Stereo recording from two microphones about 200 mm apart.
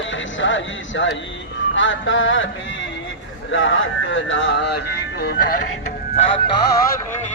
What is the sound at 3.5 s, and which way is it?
Speech, 70° left (ahead or behind).